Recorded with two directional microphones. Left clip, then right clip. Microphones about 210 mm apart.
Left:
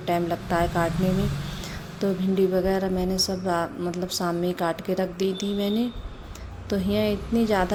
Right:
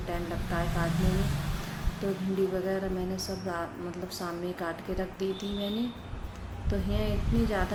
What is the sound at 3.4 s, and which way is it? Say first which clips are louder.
A woman's voice: left 9 dB; 45° left (ahead or behind).